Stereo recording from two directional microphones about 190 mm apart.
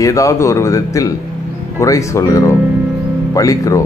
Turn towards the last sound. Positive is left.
turn(degrees=15)  # may be behind; listen again after turning